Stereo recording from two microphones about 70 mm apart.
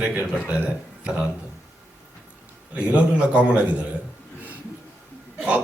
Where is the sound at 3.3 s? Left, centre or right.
Centre.